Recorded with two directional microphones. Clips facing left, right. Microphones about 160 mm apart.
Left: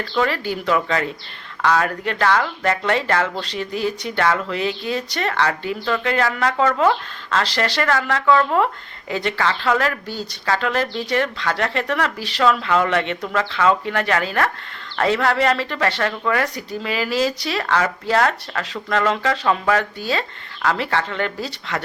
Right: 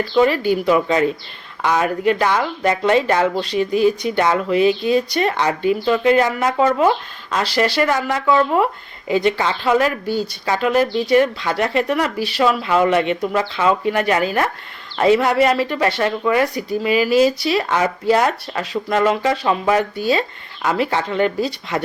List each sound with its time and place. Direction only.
0.1 s speech: 15° right (ahead or behind)